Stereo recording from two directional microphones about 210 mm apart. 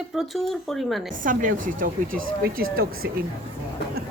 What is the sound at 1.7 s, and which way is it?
Speech, 40° right (ahead or behind).